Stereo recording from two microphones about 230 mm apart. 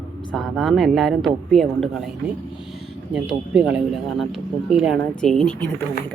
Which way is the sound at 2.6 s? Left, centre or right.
Centre.